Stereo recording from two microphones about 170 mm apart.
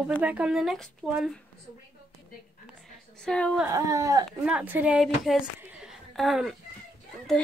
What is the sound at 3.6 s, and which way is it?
Speech, 20° right (ahead or behind).